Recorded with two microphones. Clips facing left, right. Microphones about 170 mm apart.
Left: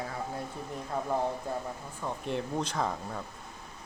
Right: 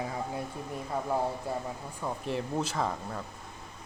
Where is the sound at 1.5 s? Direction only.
5° right (ahead or behind).